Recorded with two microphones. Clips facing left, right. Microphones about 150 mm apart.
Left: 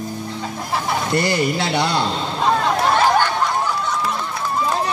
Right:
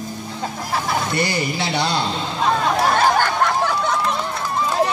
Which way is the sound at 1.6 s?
50° left (ahead or behind).